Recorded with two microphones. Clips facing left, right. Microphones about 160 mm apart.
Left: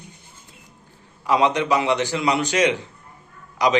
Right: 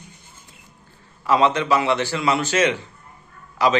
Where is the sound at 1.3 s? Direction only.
15° left (ahead or behind).